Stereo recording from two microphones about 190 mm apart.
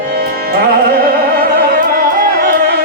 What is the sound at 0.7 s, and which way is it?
Music, 50° right (ahead or behind).